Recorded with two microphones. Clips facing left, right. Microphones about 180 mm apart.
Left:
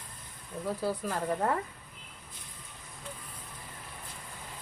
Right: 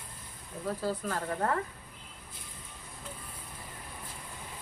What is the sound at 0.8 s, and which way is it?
Speech, 15° left (ahead or behind).